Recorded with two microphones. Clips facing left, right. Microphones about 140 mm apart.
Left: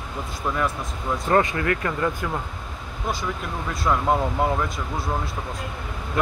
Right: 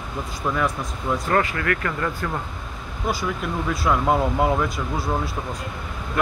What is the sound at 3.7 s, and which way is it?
Speech, 5° right (ahead or behind).